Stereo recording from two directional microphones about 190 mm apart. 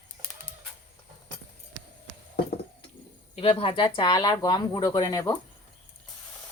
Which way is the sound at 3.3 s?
30° left (ahead or behind).